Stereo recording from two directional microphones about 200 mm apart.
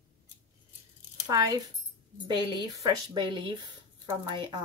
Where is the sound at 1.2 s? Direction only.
20° right (ahead or behind).